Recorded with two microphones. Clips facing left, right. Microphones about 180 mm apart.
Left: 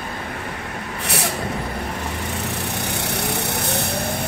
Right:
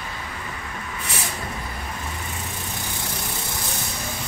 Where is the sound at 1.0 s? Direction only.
70° left (ahead or behind).